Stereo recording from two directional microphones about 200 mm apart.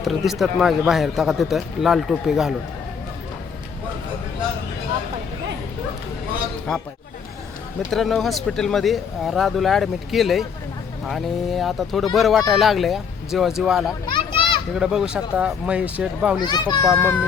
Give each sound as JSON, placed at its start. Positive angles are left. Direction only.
{"t": 0.0, "sound": "speech", "side_deg": 0}
{"t": 7.9, "sound": "speech", "side_deg": 0}
{"t": 14.1, "sound": "children playing", "side_deg": 25}
{"t": 14.7, "sound": "speech", "side_deg": -5}
{"t": 16.4, "sound": "a child's voice", "side_deg": 20}